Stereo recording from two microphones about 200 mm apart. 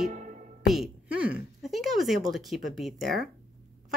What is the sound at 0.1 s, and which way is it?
Music, 40° right (ahead or behind).